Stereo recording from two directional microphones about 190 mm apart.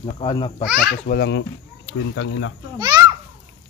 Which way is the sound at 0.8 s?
55° left (ahead or behind).